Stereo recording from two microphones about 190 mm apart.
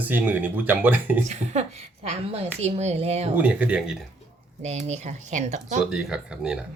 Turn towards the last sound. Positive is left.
turn(degrees=-5)  # may be behind; listen again after turning